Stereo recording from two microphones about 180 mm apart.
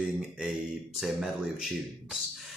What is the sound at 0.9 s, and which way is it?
Speech, 5° right (ahead or behind).